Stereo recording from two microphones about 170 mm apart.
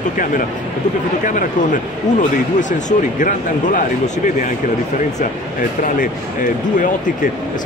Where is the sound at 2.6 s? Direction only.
45° left (ahead or behind).